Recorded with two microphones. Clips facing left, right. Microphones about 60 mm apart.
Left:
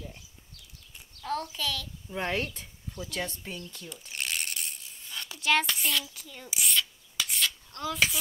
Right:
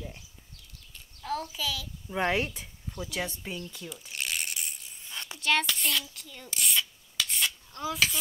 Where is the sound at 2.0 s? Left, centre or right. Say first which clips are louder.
Right 4 dB; centre.